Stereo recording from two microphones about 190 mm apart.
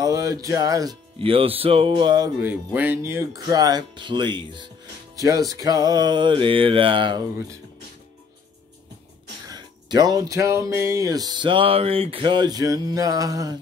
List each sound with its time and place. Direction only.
0.0 s speech: 20° right (ahead or behind)
2.7 s speech: 10° right (ahead or behind); by 7.2 s 25° right (ahead or behind)
9.5 s speech: 20° right (ahead or behind)